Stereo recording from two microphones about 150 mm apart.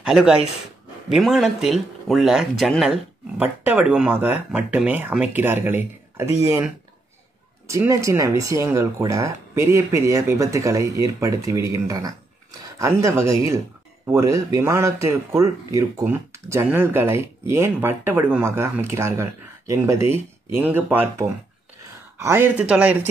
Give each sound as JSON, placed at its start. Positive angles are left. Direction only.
{"t": 0.0, "sound": "speech", "side_deg": -5}
{"t": 3.3, "sound": "speech", "side_deg": -10}